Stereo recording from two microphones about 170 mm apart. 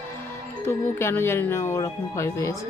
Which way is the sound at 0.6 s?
15° left (ahead or behind).